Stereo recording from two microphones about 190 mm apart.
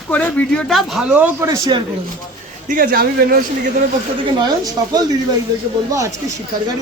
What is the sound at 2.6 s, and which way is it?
Speech, 50° right (ahead or behind).